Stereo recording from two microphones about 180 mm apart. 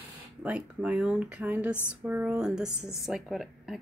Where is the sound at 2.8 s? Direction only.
15° left (ahead or behind).